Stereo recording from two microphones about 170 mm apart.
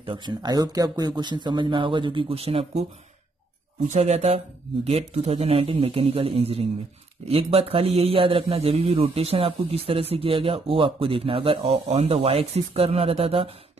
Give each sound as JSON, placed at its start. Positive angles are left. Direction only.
{"t": 0.0, "sound": "speech", "side_deg": -30}
{"t": 3.9, "sound": "a man's voice", "side_deg": -40}